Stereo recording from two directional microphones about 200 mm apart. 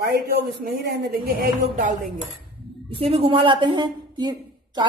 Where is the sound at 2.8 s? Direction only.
30° right (ahead or behind).